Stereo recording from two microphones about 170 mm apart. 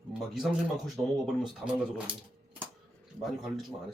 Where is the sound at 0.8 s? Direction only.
Centre (ahead or behind).